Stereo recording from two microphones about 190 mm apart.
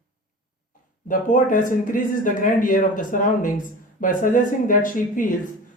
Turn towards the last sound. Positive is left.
turn(degrees=45)  # may be behind; listen again after turning